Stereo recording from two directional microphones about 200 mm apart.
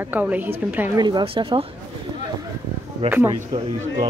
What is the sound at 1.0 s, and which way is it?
Speech, 20° right (ahead or behind).